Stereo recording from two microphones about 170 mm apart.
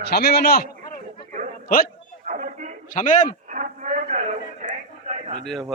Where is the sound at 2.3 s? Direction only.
55° right (ahead or behind).